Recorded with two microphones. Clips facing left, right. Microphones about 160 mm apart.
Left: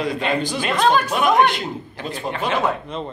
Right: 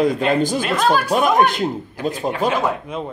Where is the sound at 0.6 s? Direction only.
5° right (ahead or behind).